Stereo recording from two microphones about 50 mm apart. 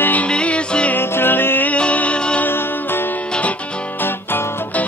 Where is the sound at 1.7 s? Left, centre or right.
Left.